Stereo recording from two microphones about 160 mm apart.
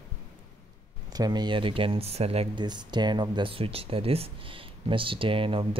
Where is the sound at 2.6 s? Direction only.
25° right (ahead or behind).